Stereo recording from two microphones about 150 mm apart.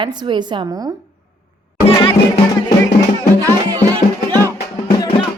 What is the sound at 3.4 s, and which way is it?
Speech, 25° right (ahead or behind).